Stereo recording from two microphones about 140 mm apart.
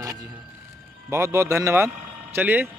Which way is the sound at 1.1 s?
20° right (ahead or behind).